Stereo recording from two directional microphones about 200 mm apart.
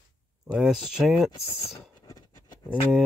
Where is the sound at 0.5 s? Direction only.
5° right (ahead or behind).